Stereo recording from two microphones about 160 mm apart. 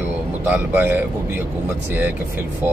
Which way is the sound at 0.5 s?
15° right (ahead or behind).